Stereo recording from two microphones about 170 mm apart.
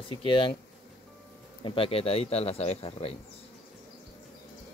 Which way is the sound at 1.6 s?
35° left (ahead or behind).